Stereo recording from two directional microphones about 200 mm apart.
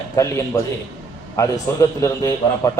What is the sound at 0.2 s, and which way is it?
A man's voice, 15° left (ahead or behind).